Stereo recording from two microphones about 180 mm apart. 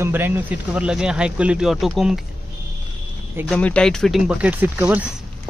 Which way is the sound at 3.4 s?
5° left (ahead or behind).